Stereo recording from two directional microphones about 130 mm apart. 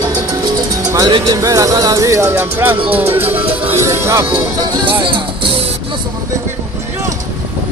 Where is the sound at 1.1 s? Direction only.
30° right (ahead or behind).